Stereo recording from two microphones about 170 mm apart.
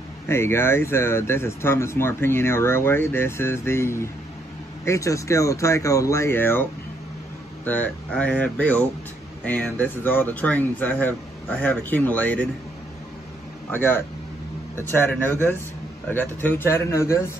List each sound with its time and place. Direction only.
0.3 s speech: 15° left (ahead or behind)
13.7 s speech: 10° left (ahead or behind)
16.1 s speech: 10° left (ahead or behind)